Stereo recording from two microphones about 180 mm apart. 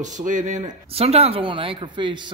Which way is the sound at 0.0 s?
45° right (ahead or behind).